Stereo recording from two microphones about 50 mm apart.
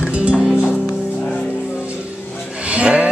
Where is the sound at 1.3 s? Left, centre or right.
Left.